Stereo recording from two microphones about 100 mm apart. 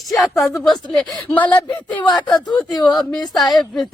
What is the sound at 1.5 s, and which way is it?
Speech, 15° left (ahead or behind).